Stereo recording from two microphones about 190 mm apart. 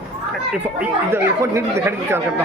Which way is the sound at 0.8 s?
10° right (ahead or behind).